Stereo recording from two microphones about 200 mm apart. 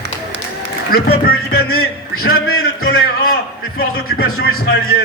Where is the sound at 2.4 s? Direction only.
90° left.